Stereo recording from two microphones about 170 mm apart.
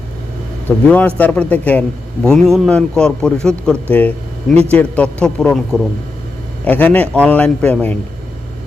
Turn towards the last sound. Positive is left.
turn(degrees=10)  # may be behind; listen again after turning